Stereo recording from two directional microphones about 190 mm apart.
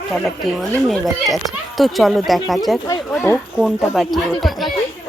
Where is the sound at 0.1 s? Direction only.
Centre (ahead or behind).